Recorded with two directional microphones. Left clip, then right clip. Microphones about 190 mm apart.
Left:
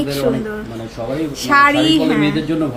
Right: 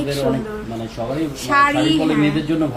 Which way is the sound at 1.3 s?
25° left (ahead or behind).